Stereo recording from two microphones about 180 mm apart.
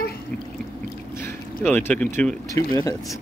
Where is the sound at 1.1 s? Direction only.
10° left (ahead or behind).